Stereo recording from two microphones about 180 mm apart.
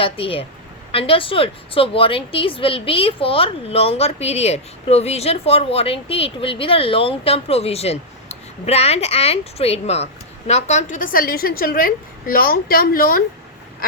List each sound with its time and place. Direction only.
0.0 s a woman's voice: 30° left (ahead or behind); by 13.2 s 55° left (ahead or behind)